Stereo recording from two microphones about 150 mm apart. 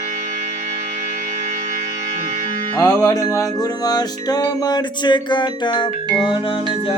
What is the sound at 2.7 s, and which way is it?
Music, 20° left (ahead or behind).